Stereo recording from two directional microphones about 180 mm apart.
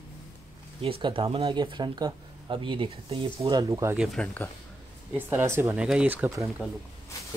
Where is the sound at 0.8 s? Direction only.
30° right (ahead or behind).